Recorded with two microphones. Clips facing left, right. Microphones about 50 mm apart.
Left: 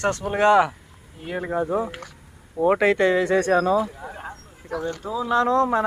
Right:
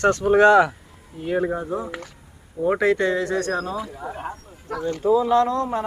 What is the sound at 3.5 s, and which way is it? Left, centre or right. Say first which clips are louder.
Speech: left 6 dB; left.